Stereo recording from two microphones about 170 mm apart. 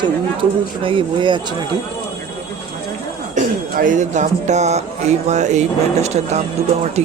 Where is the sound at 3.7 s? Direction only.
50° right (ahead or behind).